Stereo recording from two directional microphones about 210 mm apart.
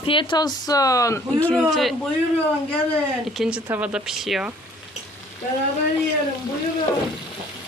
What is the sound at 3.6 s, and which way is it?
Speech, 5° right (ahead or behind).